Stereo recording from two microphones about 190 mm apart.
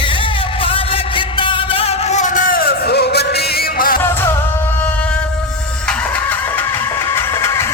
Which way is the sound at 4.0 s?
10° left (ahead or behind).